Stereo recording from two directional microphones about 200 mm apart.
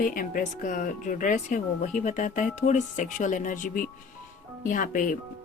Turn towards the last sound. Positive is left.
turn(degrees=40)  # may be behind; listen again after turning